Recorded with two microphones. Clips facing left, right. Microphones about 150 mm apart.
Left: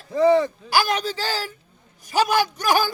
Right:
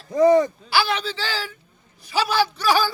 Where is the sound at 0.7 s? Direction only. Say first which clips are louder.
Left 1 dB; 45° left (ahead or behind).